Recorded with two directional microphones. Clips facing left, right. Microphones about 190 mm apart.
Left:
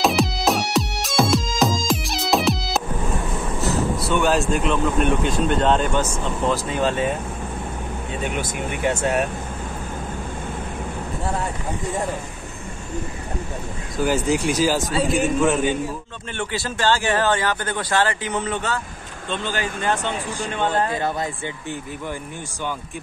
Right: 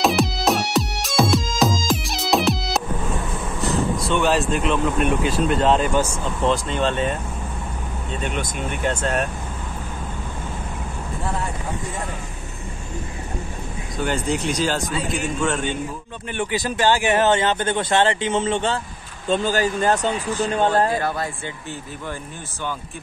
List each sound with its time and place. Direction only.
0.0 s music: centre (ahead or behind)
4.0 s speech: centre (ahead or behind)
6.4 s speech: 5° left (ahead or behind)
8.2 s speech: 10° left (ahead or behind)
13.9 s speech: 5° left (ahead or behind)
16.3 s speech: 15° right (ahead or behind)
19.2 s speech: 40° right (ahead or behind)